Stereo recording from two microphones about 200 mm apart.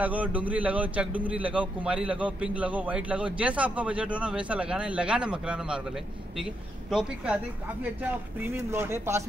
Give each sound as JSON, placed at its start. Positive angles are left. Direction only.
{"t": 0.0, "sound": "a man's voice", "side_deg": -5}